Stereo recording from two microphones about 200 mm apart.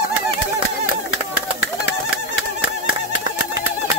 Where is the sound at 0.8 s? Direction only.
75° left (ahead or behind).